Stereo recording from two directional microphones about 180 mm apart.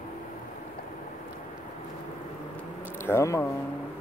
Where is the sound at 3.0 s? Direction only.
15° left (ahead or behind).